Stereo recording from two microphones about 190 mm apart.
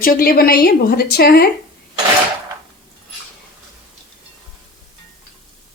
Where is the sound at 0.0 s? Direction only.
50° left (ahead or behind).